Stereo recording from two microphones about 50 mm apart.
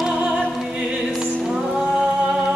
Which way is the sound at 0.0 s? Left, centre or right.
Centre.